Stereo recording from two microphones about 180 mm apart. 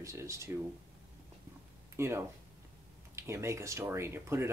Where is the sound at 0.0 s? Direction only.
15° right (ahead or behind).